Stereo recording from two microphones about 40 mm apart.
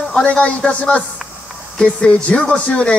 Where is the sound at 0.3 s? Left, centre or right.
Left.